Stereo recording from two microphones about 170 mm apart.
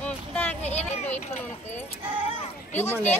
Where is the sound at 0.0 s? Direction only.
10° left (ahead or behind).